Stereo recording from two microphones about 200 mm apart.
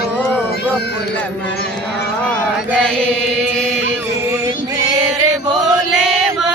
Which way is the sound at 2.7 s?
5° left (ahead or behind).